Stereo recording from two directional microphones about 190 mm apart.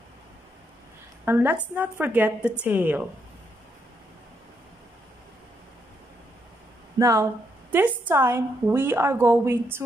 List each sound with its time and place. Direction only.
1.2 s a woman's voice: 10° right (ahead or behind)
7.0 s a woman's voice: 15° right (ahead or behind)